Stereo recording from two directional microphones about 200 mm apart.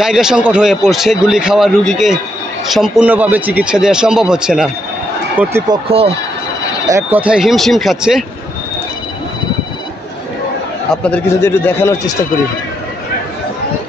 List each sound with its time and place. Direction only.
0.0 s a man's voice: 5° right (ahead or behind)
5.7 s speech: 30° right (ahead or behind)
6.9 s a man's voice: 10° right (ahead or behind)
11.1 s a man's voice: 10° left (ahead or behind)